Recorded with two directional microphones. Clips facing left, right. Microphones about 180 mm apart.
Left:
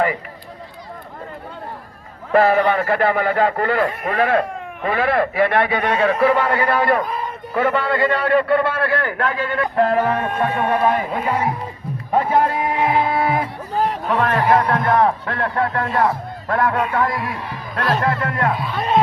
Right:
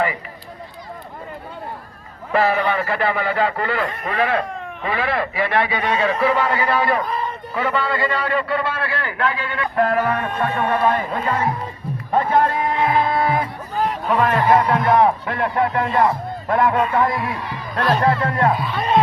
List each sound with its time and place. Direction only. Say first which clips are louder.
2.3 s a man's voice: left 4 dB; 50° left (ahead or behind)
7.1 s run: right 1 dB; 10° left (ahead or behind)
7.5 s a man's voice: left 4 dB; 55° left (ahead or behind)
9.7 s a sound: left 1 dB; 30° left (ahead or behind)
10.3 s speech: left 1 dB; 10° left (ahead or behind)
12.1 s a sound: even; 10° left (ahead or behind)
13.7 s a sound: left 2 dB; 40° left (ahead or behind)
14.1 s speech: right 1 dB; 5° right (ahead or behind); by 18.5 s 30° right (ahead or behind)
18.5 s speech: right 1 dB; centre (ahead or behind)